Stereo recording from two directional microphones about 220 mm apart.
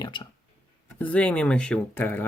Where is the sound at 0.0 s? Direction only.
20° left (ahead or behind).